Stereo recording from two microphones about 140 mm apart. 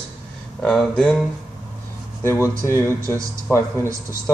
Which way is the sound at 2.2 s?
20° left (ahead or behind).